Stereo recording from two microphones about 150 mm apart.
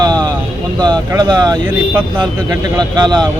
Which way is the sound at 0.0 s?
25° right (ahead or behind).